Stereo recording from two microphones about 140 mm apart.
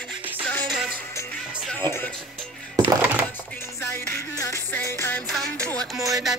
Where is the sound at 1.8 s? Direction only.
15° left (ahead or behind).